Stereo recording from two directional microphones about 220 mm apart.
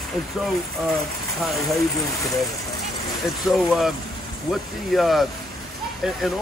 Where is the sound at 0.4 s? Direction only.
Centre (ahead or behind).